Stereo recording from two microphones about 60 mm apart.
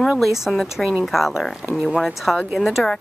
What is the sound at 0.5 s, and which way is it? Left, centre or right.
Speech, centre.